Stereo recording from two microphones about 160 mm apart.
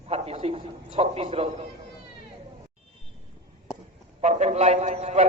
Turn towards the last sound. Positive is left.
turn(degrees=-45)  # may be behind; listen again after turning